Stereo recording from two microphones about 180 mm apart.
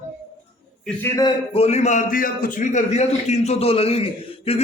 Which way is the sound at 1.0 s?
15° left (ahead or behind).